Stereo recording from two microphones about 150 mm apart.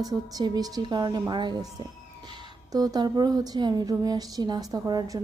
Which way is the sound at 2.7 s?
25° right (ahead or behind).